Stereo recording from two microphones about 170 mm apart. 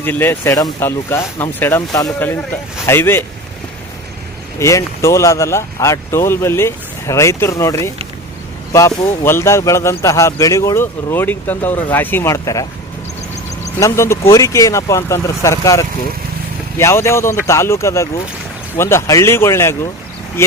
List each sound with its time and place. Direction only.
0.0 s speech: 10° left (ahead or behind)
4.6 s speech: 15° left (ahead or behind)
13.7 s speech: 15° left (ahead or behind)